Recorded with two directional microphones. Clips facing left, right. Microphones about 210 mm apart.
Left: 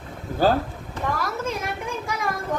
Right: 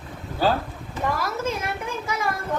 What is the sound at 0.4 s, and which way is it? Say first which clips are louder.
Speech: left 2 dB; 50° left (ahead or behind).